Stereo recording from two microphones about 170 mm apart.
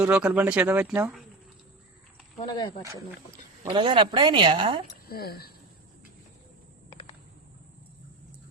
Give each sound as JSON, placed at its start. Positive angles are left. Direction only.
{"t": 0.0, "sound": "speech", "side_deg": -5}
{"t": 2.5, "sound": "speech", "side_deg": 25}
{"t": 3.7, "sound": "speech", "side_deg": -30}
{"t": 5.0, "sound": "speech", "side_deg": 65}